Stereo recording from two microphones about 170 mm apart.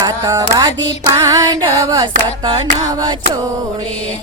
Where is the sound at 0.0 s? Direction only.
20° right (ahead or behind).